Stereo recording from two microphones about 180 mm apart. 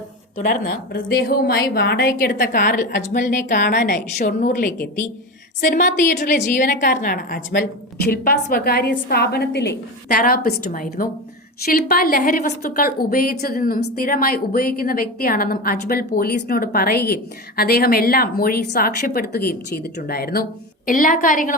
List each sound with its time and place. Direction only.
0.3 s a woman's voice: 50° left (ahead or behind)